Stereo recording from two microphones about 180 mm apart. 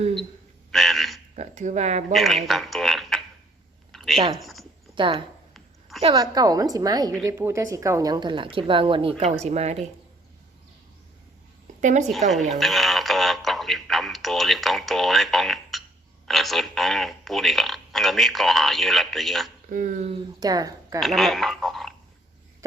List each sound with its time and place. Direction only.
0.7 s frog: centre (ahead or behind)
1.4 s speech: 40° right (ahead or behind)
2.1 s speech: centre (ahead or behind)
3.9 s a sound: centre (ahead or behind)
4.4 s speech: centre (ahead or behind)
4.9 s speech: 25° right (ahead or behind)
11.8 s speech: 45° right (ahead or behind)
12.5 s speech: centre (ahead or behind)
19.7 s speech: 45° right (ahead or behind)
20.1 s speech: 20° right (ahead or behind)
21.0 s speech: centre (ahead or behind)